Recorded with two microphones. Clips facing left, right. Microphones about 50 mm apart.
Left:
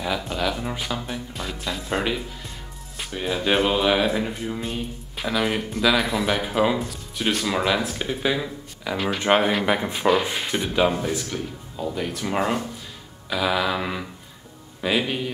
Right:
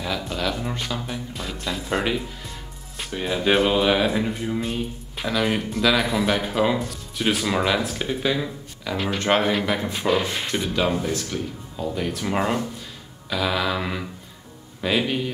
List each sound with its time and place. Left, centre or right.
0.0 s speech: centre
3.0 s speech: centre
9.7 s speech: left
9.9 s speech: centre